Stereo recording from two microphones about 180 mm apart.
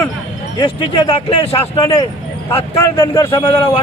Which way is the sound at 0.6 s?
25° left (ahead or behind).